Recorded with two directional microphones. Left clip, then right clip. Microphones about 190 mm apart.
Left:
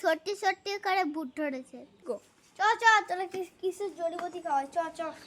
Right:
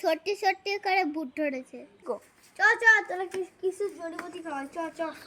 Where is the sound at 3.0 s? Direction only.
35° left (ahead or behind).